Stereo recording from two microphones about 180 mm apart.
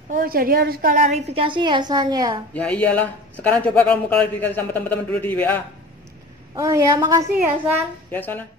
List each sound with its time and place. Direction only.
0.1 s a woman's voice: 55° right (ahead or behind)
1.0 s a woman's voice: 35° right (ahead or behind)
2.5 s a man's voice: 5° left (ahead or behind)
6.5 s a woman's voice: 20° right (ahead or behind)
8.1 s a man's voice: 10° left (ahead or behind)